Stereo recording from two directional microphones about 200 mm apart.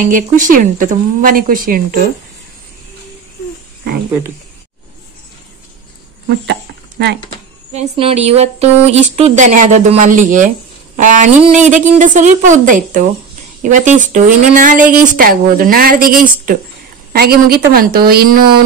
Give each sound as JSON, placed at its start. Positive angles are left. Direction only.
{"t": 0.0, "sound": "a woman's voice", "side_deg": -40}
{"t": 6.2, "sound": "a sound", "side_deg": -60}
{"t": 7.7, "sound": "a woman's voice", "side_deg": -30}